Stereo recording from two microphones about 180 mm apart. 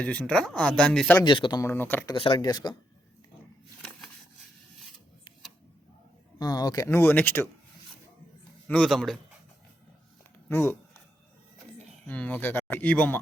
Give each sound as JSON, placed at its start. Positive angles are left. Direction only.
{"t": 0.0, "sound": "speech", "side_deg": 5}
{"t": 1.2, "sound": "speech", "side_deg": 25}
{"t": 2.1, "sound": "speech", "side_deg": 25}
{"t": 6.4, "sound": "speech", "side_deg": 20}
{"t": 8.6, "sound": "speech", "side_deg": 5}
{"t": 10.5, "sound": "speech", "side_deg": 15}
{"t": 12.0, "sound": "speech", "side_deg": 10}